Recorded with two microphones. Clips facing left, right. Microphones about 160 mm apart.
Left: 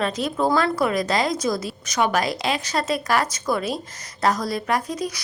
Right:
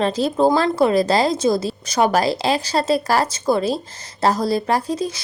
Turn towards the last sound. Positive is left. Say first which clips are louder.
# right 4 dB
turn(degrees=-30)  # may be behind; listen again after turning